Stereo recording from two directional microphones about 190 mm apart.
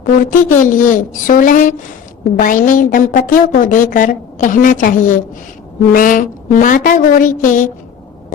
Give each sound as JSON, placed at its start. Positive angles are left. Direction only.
{"t": 0.0, "sound": "a woman's voice", "side_deg": 45}